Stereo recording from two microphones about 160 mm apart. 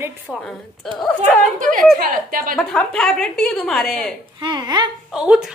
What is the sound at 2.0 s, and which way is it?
Speech, 65° right (ahead or behind).